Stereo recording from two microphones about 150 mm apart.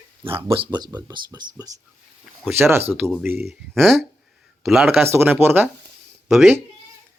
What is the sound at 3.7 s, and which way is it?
Speech, centre (ahead or behind).